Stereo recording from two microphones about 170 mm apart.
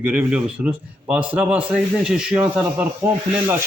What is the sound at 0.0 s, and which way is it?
A man's voice, 10° right (ahead or behind).